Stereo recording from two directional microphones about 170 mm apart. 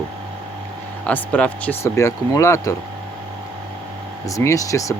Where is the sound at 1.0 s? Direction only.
10° left (ahead or behind).